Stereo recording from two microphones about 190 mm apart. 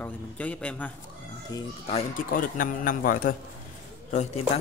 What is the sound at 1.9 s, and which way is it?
Speech, 35° left (ahead or behind).